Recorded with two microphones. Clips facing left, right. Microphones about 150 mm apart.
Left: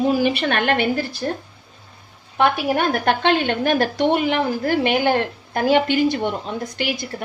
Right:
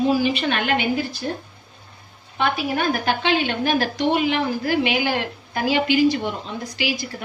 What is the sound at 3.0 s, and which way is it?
A woman's voice, 55° left (ahead or behind).